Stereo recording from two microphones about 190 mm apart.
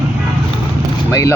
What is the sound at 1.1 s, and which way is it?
Speech, 15° left (ahead or behind).